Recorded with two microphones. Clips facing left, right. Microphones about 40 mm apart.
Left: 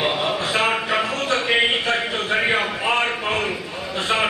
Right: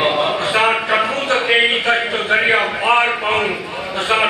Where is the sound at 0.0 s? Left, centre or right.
Right.